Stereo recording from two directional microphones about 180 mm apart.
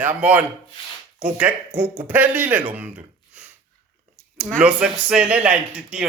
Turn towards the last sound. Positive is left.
turn(degrees=-5)  # may be behind; listen again after turning